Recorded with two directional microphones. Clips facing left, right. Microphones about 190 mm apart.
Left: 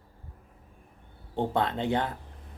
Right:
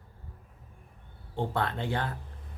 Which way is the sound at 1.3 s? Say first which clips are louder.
Left 3 dB; 20° left (ahead or behind).